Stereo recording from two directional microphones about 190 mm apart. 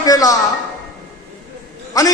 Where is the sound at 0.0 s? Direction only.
20° left (ahead or behind).